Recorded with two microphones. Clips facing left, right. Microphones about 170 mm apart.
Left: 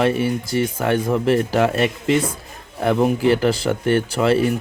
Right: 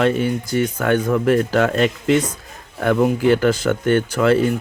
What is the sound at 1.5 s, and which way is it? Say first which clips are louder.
Speech: right 1 dB; 10° left (ahead or behind).